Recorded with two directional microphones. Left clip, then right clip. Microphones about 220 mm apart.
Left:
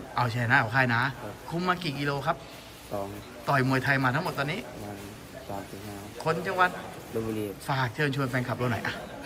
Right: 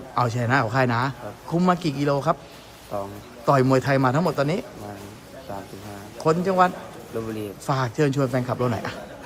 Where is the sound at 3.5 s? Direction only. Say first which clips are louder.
Right 6 dB; 25° right (ahead or behind).